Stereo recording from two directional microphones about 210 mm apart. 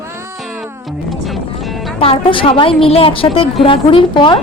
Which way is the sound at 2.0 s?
25° left (ahead or behind).